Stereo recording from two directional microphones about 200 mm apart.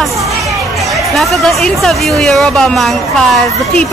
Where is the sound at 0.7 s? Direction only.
Centre (ahead or behind).